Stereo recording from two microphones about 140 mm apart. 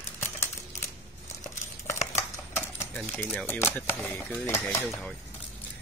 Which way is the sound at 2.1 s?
20° left (ahead or behind).